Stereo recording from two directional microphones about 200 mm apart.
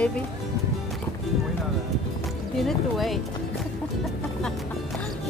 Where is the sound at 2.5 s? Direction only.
Centre (ahead or behind).